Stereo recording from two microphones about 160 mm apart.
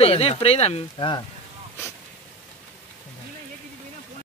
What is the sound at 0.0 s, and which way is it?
Speech, 40° left (ahead or behind).